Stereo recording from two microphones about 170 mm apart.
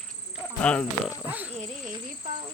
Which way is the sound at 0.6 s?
5° left (ahead or behind).